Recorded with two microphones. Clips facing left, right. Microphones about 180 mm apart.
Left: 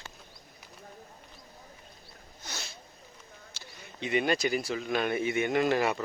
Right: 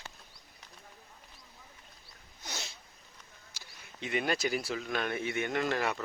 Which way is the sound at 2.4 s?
15° right (ahead or behind).